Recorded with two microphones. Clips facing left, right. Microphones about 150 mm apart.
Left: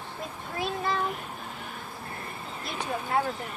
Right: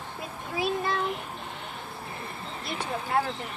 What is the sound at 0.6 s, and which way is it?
Speech, centre (ahead or behind).